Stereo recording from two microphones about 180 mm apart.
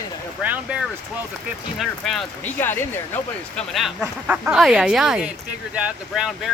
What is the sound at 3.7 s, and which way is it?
Speech, centre (ahead or behind).